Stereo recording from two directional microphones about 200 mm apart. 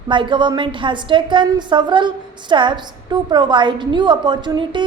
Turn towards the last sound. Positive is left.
turn(degrees=-20)  # may be behind; listen again after turning